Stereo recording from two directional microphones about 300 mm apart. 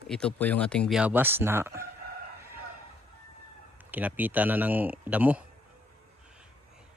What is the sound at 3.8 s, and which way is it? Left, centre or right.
Speech, centre.